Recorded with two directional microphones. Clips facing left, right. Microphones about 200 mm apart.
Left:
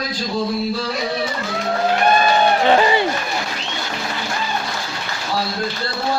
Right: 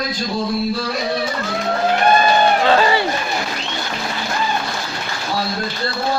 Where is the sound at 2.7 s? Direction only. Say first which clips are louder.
Even; 20° left (ahead or behind).